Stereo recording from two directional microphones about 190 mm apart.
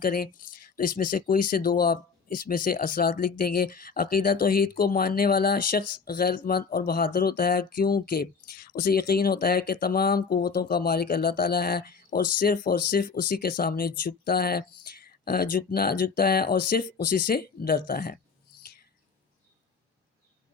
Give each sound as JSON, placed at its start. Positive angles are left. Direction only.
{"t": 0.0, "sound": "speech", "side_deg": 50}